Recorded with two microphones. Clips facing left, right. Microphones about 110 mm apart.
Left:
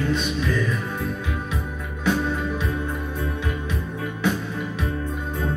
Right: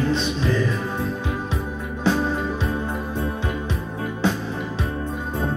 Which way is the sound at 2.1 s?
30° right (ahead or behind).